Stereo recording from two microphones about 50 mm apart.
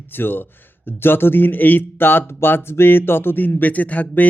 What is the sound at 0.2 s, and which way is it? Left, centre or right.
Speech, left.